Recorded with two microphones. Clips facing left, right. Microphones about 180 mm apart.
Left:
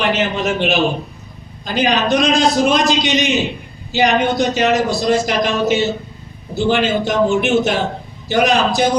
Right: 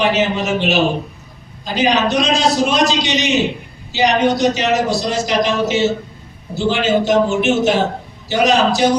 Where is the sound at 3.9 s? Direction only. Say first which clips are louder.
Even; 55° left (ahead or behind).